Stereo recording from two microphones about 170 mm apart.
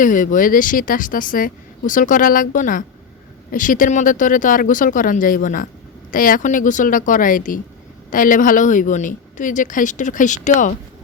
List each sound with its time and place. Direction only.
0.0 s a woman's voice: 50° left (ahead or behind)